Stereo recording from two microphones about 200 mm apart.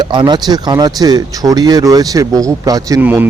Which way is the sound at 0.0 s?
25° right (ahead or behind).